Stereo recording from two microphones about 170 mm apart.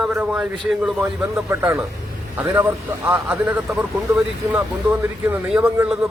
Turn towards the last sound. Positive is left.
turn(degrees=-5)  # may be behind; listen again after turning